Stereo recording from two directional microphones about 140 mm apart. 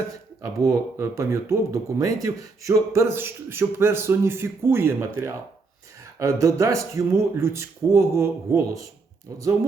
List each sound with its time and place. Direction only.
0.4 s speech: 20° right (ahead or behind)
2.2 s a sound: 25° right (ahead or behind)
6.1 s speech: 25° right (ahead or behind)